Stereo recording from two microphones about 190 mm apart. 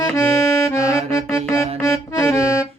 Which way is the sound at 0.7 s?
15° left (ahead or behind).